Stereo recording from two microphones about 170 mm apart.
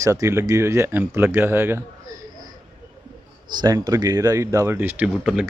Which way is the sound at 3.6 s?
20° right (ahead or behind).